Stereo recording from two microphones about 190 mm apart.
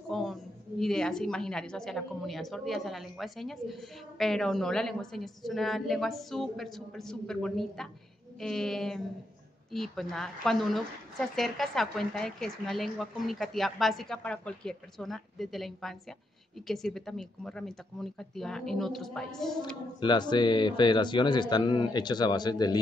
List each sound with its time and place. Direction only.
0.1 s a woman's voice: centre (ahead or behind)
20.0 s a man's voice: 25° left (ahead or behind)